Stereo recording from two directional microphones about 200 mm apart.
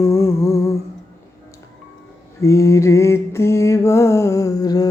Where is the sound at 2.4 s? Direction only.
15° left (ahead or behind).